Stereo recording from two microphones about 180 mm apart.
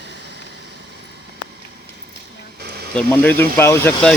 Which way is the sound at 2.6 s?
60° right (ahead or behind).